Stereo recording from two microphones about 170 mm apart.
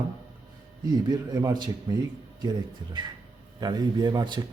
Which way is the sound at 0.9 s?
25° right (ahead or behind).